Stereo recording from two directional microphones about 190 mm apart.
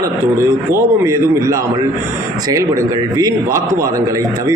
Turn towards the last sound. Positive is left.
turn(degrees=-15)  # may be behind; listen again after turning